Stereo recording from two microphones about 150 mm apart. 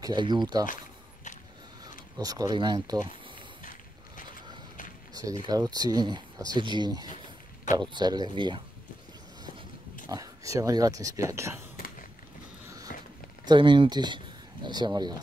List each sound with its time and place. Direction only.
0.0 s speech: 30° right (ahead or behind)
2.1 s speech: 25° right (ahead or behind)
5.1 s speech: 25° right (ahead or behind)
10.0 s speech: 25° right (ahead or behind)
12.6 s walk: 25° right (ahead or behind)
13.5 s speech: 30° right (ahead or behind)